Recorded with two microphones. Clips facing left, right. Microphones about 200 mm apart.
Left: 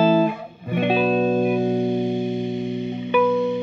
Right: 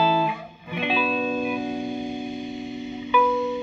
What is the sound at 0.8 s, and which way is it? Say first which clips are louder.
Music: left 6 dB; 35° left (ahead or behind).